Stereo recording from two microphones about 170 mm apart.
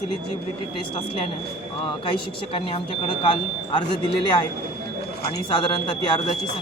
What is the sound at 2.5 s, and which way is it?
Speech, 30° left (ahead or behind).